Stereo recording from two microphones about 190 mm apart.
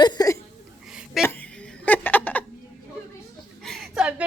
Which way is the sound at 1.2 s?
10° left (ahead or behind).